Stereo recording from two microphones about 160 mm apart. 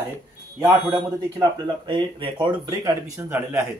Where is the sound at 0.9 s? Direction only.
30° right (ahead or behind).